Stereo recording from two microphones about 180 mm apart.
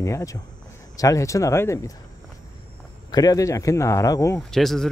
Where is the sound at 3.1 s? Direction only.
20° left (ahead or behind).